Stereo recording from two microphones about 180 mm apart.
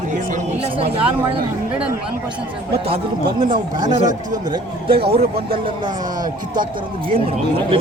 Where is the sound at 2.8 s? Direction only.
30° right (ahead or behind).